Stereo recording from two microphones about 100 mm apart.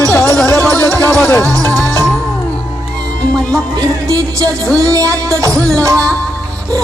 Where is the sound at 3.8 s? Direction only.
35° right (ahead or behind).